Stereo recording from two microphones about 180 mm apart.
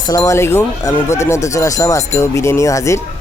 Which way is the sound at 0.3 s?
15° left (ahead or behind).